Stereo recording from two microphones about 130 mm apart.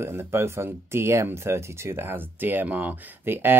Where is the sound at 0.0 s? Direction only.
20° right (ahead or behind).